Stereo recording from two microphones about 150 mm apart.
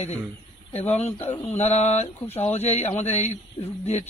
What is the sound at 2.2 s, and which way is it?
Speech, 15° left (ahead or behind).